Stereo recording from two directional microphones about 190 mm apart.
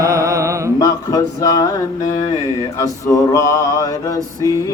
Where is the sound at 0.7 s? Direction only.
20° left (ahead or behind).